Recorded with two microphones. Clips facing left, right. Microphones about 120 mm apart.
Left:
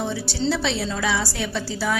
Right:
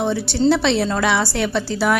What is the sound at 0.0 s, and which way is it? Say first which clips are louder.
A woman's voice: right 7 dB; 60° right (ahead or behind).